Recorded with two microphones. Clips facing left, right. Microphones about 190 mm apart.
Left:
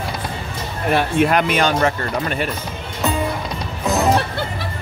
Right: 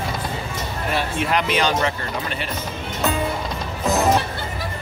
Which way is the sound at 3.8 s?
Centre (ahead or behind).